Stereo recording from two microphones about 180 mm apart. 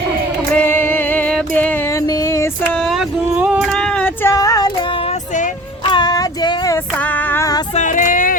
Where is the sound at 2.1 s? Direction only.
20° left (ahead or behind).